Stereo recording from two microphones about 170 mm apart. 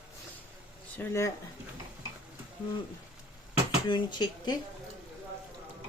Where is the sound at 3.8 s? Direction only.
25° left (ahead or behind).